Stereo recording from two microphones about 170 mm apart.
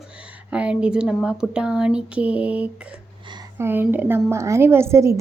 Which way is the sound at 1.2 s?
5° right (ahead or behind).